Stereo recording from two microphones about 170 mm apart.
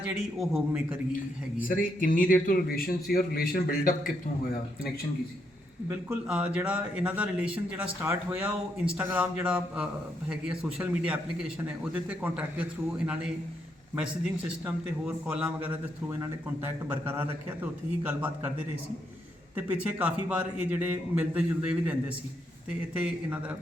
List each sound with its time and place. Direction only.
0.3 s a man's voice: 5° right (ahead or behind)
1.6 s a man's voice: 55° left (ahead or behind)
5.9 s a man's voice: 10° right (ahead or behind)
15.0 s a man's voice: 5° right (ahead or behind)
19.5 s a man's voice: 10° right (ahead or behind)
23.0 s a man's voice: 5° right (ahead or behind)